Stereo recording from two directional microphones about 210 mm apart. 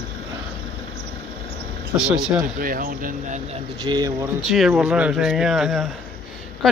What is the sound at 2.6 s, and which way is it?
Speech, 45° right (ahead or behind).